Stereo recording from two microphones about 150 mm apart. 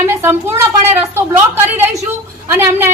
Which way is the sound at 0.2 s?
15° right (ahead or behind).